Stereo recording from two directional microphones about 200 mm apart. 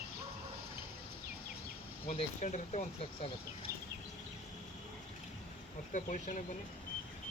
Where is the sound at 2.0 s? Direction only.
35° left (ahead or behind).